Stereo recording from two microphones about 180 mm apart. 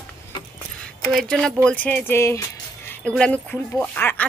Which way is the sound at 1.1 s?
Centre (ahead or behind).